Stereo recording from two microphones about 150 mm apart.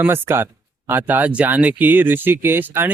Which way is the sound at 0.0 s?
15° right (ahead or behind).